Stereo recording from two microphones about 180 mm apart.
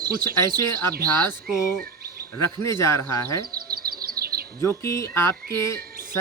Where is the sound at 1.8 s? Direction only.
55° right (ahead or behind).